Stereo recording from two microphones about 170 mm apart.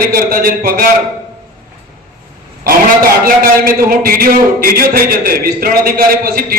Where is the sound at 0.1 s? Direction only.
60° right (ahead or behind).